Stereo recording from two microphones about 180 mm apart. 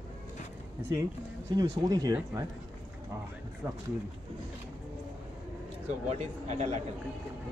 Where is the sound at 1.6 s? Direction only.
20° right (ahead or behind).